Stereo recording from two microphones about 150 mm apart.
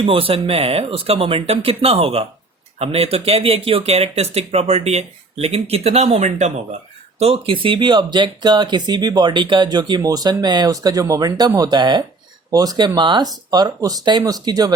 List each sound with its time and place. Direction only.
0.0 s speech: 35° right (ahead or behind)